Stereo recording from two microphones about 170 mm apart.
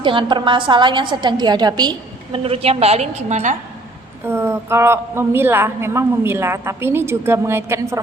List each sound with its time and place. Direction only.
0.0 s a woman's voice: 30° right (ahead or behind)
4.3 s a woman's voice: 15° right (ahead or behind)